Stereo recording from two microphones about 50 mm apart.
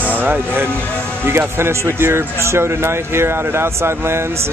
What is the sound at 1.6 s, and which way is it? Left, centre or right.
Speech, right.